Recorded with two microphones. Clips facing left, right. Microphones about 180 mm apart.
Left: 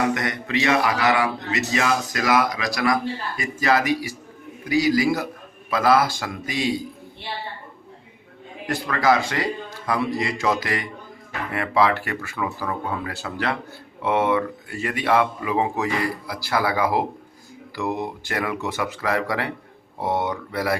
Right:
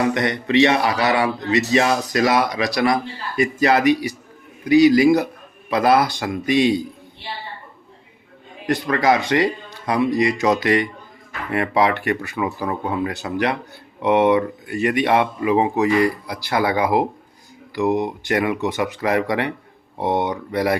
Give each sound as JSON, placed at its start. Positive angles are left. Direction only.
{"t": 0.1, "sound": "a man's voice", "side_deg": -25}
{"t": 8.6, "sound": "a man's voice", "side_deg": -20}